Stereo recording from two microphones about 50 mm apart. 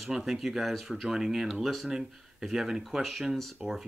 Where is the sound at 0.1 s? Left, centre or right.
Centre.